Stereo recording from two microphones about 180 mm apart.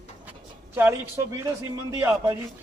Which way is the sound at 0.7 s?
15° right (ahead or behind).